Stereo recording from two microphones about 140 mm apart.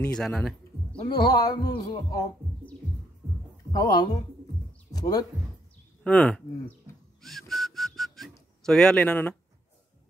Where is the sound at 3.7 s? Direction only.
30° left (ahead or behind).